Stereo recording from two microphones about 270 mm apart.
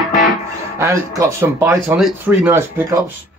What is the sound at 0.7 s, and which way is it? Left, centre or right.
Speech, centre.